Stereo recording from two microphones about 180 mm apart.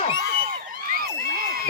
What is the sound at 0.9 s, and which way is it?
Crowd, 55° right (ahead or behind).